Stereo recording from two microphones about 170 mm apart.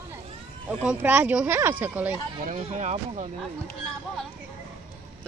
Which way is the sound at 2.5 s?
45° right (ahead or behind).